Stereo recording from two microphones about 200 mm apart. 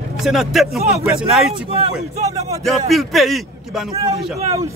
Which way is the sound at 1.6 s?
30° right (ahead or behind).